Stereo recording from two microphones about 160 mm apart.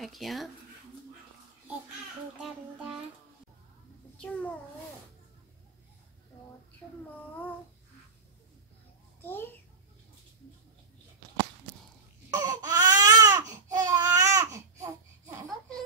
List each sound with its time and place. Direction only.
0.0 s speech: centre (ahead or behind)
4.2 s a child's voice: 5° left (ahead or behind)
9.2 s a child's voice: 15° left (ahead or behind)
12.3 s baby cry: 25° right (ahead or behind)